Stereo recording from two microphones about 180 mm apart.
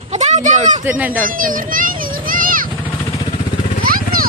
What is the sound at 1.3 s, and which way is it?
Speech, 50° right (ahead or behind).